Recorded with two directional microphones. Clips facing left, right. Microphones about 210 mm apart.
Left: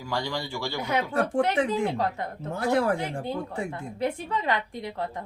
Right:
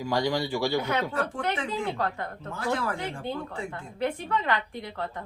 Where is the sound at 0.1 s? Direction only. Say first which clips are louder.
Right 4 dB; 15° right (ahead or behind).